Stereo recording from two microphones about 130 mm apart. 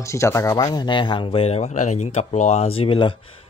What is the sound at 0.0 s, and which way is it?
Speech, 20° left (ahead or behind).